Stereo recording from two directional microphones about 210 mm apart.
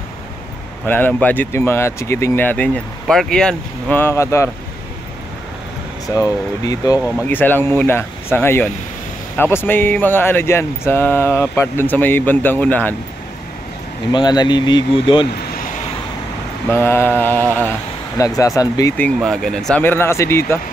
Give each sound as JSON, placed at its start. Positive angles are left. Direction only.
{"t": 0.8, "sound": "speech", "side_deg": 10}
{"t": 6.1, "sound": "speech", "side_deg": 15}
{"t": 14.1, "sound": "speech", "side_deg": 20}
{"t": 15.3, "sound": "vehicle", "side_deg": 45}
{"t": 16.6, "sound": "speech", "side_deg": 10}